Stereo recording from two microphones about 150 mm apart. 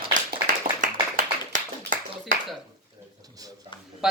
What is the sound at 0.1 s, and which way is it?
Clapping, 65° right (ahead or behind).